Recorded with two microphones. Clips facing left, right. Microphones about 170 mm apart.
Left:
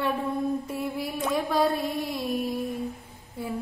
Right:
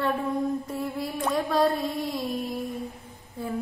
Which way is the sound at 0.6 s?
10° left (ahead or behind).